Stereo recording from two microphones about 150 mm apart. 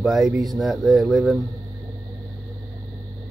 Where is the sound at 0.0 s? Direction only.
Centre (ahead or behind).